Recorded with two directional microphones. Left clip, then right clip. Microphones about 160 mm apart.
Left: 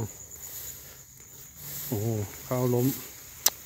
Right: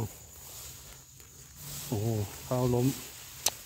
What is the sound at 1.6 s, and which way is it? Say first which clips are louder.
Insect: left 2 dB; 20° left (ahead or behind).